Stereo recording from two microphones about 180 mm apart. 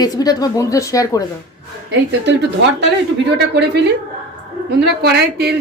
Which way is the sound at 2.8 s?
70° right (ahead or behind).